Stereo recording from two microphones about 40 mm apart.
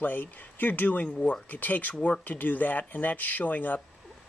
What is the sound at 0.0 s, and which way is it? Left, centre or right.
Speech, left.